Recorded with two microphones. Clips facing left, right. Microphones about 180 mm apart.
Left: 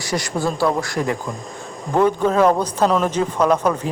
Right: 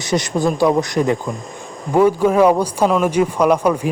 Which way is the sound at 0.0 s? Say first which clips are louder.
Right 4 dB; 20° right (ahead or behind).